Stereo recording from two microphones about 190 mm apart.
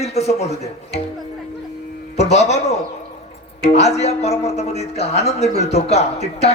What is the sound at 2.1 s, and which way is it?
A man's voice, 35° left (ahead or behind).